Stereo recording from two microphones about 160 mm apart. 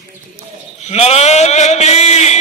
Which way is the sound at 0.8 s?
40° left (ahead or behind).